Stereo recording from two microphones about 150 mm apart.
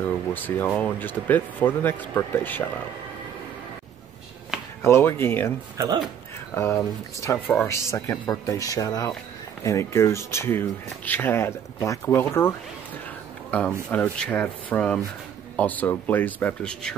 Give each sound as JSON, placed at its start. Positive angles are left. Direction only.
{"t": 0.0, "sound": "speech", "side_deg": 10}
{"t": 4.8, "sound": "speech", "side_deg": 15}
{"t": 5.8, "sound": "speech", "side_deg": -25}
{"t": 6.5, "sound": "speech", "side_deg": 20}